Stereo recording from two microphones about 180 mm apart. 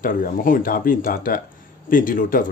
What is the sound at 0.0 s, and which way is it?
Speech, 50° left (ahead or behind).